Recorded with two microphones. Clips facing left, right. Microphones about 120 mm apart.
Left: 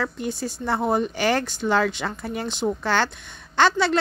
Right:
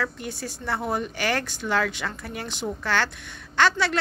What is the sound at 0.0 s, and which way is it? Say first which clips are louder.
A woman's voice: left 4 dB; 25° left (ahead or behind).